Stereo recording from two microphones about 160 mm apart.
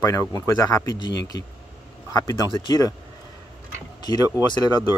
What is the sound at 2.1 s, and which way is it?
Speech, 25° left (ahead or behind).